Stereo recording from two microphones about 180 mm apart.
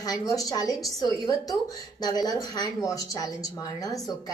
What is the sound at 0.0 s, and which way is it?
A woman's voice, 20° left (ahead or behind).